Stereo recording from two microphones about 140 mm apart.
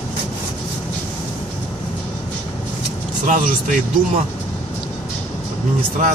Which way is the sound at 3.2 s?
75° right (ahead or behind).